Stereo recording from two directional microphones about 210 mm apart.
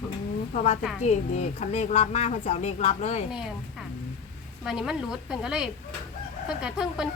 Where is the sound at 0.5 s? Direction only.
30° left (ahead or behind).